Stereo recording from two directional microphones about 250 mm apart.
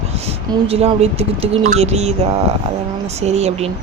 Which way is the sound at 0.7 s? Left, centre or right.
Right.